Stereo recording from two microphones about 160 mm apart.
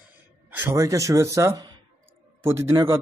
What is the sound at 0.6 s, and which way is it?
Speech, 20° right (ahead or behind).